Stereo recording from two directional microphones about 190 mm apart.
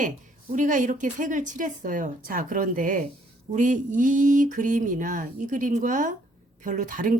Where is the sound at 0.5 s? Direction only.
40° right (ahead or behind).